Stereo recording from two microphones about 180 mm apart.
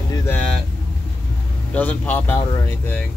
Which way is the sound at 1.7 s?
10° left (ahead or behind).